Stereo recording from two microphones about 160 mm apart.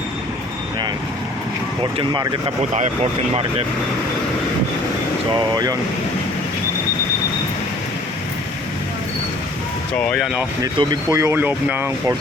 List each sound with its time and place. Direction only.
1.8 s speech: 30° right (ahead or behind)
10.0 s speech: 10° left (ahead or behind)
10.6 s speech: 20° right (ahead or behind)